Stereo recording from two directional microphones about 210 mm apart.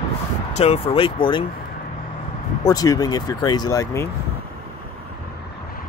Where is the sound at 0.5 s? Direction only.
30° left (ahead or behind).